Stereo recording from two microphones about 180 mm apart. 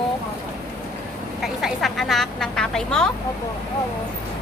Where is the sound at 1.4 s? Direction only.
Centre (ahead or behind).